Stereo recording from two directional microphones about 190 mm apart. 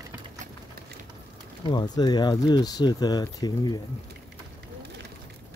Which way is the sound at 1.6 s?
25° left (ahead or behind).